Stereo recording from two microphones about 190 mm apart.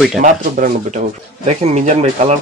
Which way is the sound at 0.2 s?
40° right (ahead or behind).